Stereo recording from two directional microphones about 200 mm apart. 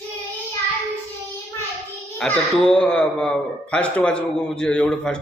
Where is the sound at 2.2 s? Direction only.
5° left (ahead or behind).